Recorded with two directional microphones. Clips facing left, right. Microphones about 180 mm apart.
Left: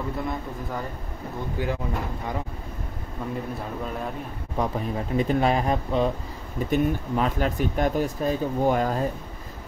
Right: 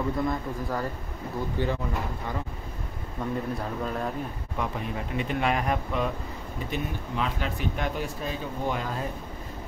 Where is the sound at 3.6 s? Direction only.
Centre (ahead or behind).